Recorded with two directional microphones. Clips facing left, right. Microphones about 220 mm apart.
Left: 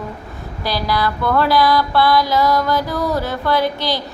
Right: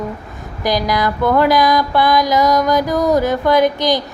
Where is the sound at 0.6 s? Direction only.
15° right (ahead or behind).